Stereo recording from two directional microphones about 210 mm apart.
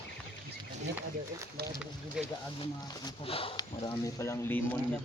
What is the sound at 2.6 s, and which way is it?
Speech, 20° left (ahead or behind).